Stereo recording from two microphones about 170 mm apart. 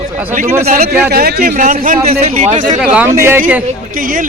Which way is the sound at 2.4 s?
45° right (ahead or behind).